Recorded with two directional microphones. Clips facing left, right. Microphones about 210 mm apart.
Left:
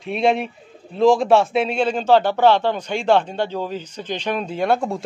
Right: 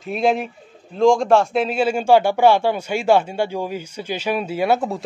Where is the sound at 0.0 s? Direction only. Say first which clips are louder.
Even; centre (ahead or behind).